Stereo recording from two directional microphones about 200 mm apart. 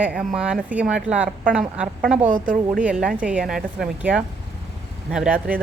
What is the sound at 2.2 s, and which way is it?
Speech, 45° right (ahead or behind).